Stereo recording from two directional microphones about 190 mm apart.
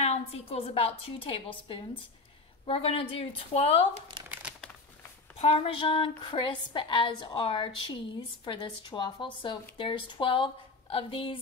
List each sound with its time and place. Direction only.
0.0 s a woman's voice: 30° left (ahead or behind)
4.3 s crumpling: 5° right (ahead or behind)
5.4 s speech: 30° left (ahead or behind)